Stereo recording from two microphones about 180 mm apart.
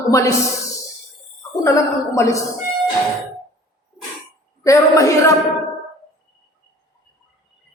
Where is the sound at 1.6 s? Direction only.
15° left (ahead or behind).